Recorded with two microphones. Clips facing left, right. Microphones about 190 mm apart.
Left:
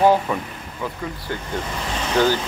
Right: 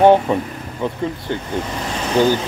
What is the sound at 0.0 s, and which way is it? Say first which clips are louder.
Speech: right 5 dB; 25° right (ahead or behind).